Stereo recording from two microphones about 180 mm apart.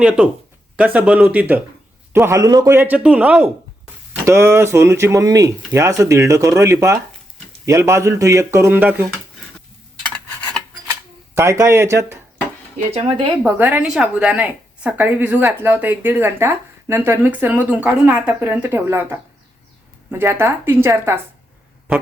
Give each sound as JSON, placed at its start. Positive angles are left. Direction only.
{"t": 0.8, "sound": "a woman's voice", "side_deg": -5}
{"t": 10.0, "sound": "a sound", "side_deg": 10}
{"t": 11.3, "sound": "a woman's voice", "side_deg": -15}
{"t": 12.9, "sound": "speech", "side_deg": -30}
{"t": 13.4, "sound": "a woman's voice", "side_deg": -10}